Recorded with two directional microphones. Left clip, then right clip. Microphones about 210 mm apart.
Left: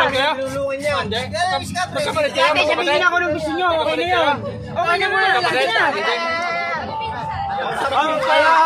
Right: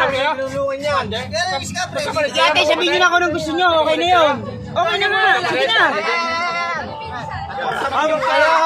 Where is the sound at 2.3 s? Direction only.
55° right (ahead or behind).